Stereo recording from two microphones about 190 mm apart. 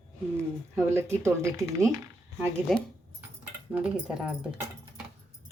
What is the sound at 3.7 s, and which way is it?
Speech, 5° right (ahead or behind).